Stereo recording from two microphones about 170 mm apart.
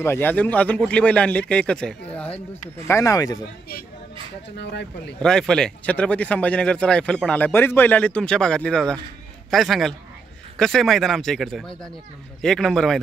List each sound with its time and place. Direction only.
0.0 s speech: 10° left (ahead or behind)
4.6 s speech: 85° left
5.2 s speech: 5° left (ahead or behind)